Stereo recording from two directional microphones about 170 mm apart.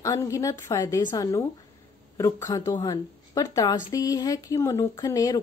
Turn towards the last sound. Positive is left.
turn(degrees=20)  # may be behind; listen again after turning